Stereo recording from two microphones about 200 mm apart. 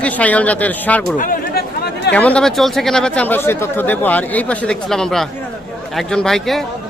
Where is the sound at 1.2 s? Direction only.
45° left (ahead or behind).